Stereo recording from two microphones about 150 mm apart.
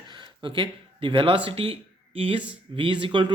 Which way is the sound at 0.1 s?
30° right (ahead or behind).